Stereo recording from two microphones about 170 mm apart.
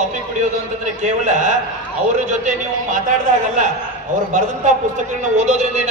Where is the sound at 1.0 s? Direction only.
45° right (ahead or behind).